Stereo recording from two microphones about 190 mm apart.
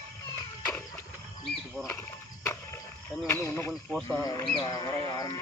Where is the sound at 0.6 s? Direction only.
10° left (ahead or behind).